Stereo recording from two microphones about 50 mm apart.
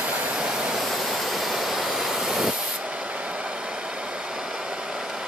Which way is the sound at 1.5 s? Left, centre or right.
Centre.